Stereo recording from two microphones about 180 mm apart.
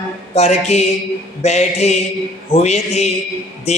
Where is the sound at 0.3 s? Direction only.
35° left (ahead or behind).